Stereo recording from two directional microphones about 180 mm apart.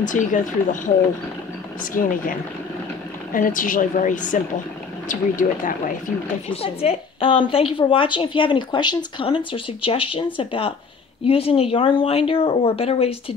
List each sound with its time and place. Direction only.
0.0 s speech: 45° left (ahead or behind)
1.8 s speech: 50° left (ahead or behind)
3.3 s speech: 50° left (ahead or behind)
6.5 s a woman's voice: 35° left (ahead or behind)